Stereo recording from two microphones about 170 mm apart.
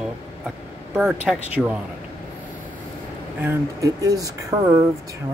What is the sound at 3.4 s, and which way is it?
Speech, 20° right (ahead or behind).